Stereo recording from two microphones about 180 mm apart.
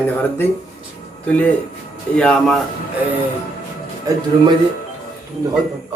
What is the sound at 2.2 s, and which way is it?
Speech, 5° left (ahead or behind).